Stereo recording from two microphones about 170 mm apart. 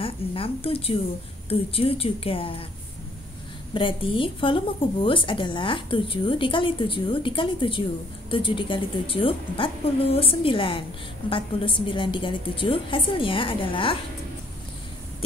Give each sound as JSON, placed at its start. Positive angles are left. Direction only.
{"t": 0.0, "sound": "a woman's voice", "side_deg": 35}
{"t": 3.7, "sound": "a woman's voice", "side_deg": 30}